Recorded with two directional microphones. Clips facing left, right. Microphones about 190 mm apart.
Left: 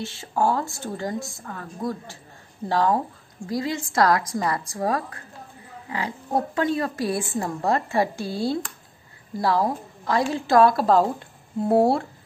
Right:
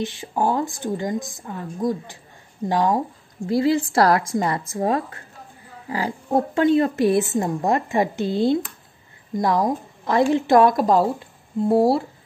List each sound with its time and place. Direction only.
0.0 s a woman's voice: 15° right (ahead or behind)
3.4 s a woman's voice: 30° right (ahead or behind)
11.7 s speech: 5° right (ahead or behind)